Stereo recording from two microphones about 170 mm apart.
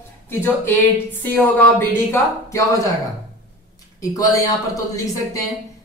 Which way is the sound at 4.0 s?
20° left (ahead or behind).